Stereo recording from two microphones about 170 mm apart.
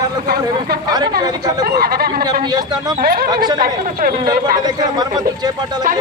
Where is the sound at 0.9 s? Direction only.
25° right (ahead or behind).